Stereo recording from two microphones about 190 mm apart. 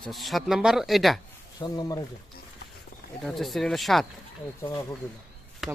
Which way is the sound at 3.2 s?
Centre (ahead or behind).